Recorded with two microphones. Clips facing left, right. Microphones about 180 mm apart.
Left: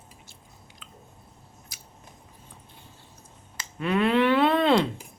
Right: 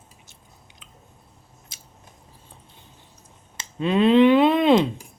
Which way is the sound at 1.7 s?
25° right (ahead or behind).